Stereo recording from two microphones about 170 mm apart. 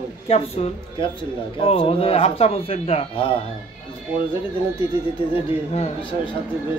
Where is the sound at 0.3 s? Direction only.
35° left (ahead or behind).